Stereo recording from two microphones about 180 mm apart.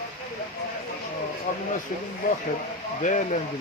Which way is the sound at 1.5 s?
50° left (ahead or behind).